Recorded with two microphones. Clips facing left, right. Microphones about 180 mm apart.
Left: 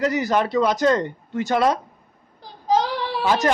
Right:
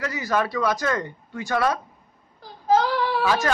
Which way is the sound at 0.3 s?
20° left (ahead or behind).